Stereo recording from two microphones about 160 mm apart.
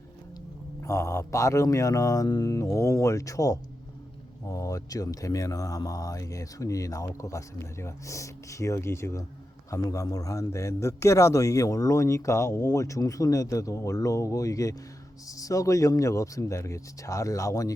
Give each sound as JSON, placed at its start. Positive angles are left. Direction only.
{"t": 0.8, "sound": "a man's voice", "side_deg": 20}